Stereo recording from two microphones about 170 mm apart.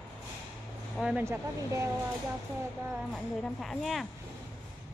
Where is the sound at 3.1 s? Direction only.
5° left (ahead or behind).